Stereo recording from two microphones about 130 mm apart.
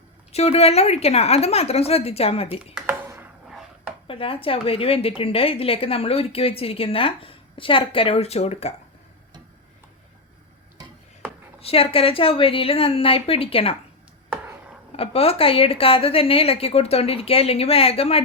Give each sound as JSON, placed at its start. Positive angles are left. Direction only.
{"t": 0.3, "sound": "a woman's voice", "side_deg": 50}
{"t": 4.0, "sound": "a woman's voice", "side_deg": 45}
{"t": 11.6, "sound": "a woman's voice", "side_deg": 50}
{"t": 14.9, "sound": "a woman's voice", "side_deg": 50}